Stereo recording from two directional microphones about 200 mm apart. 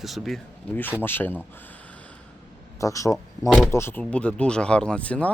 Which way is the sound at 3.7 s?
10° left (ahead or behind).